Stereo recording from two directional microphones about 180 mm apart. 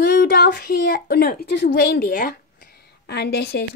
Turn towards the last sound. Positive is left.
turn(degrees=65)  # may be behind; listen again after turning